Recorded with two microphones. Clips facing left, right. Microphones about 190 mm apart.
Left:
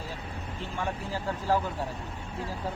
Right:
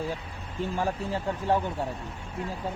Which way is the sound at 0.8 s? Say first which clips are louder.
Right 2 dB; 25° right (ahead or behind).